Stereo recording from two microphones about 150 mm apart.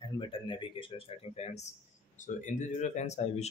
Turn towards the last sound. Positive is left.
turn(degrees=45)  # may be behind; listen again after turning